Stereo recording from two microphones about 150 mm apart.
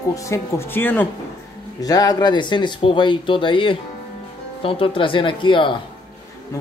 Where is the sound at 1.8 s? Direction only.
25° left (ahead or behind).